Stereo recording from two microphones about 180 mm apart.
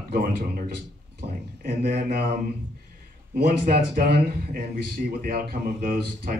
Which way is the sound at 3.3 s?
55° right (ahead or behind).